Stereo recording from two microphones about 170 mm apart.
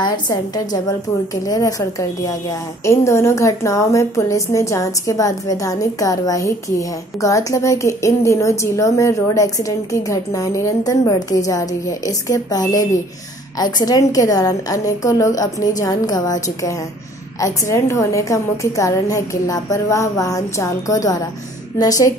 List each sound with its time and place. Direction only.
0.0 s a woman's voice: 25° left (ahead or behind)